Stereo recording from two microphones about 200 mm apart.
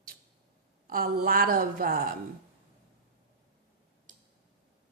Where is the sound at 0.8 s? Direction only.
45° right (ahead or behind).